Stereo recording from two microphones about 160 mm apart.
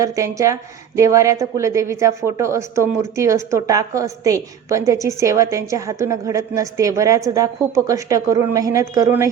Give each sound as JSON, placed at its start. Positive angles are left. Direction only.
{"t": 0.0, "sound": "a woman's voice", "side_deg": -20}